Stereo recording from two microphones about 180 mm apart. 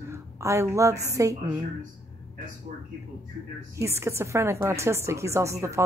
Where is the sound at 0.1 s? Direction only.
15° right (ahead or behind).